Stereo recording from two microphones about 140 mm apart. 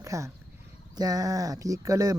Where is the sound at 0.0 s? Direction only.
25° right (ahead or behind).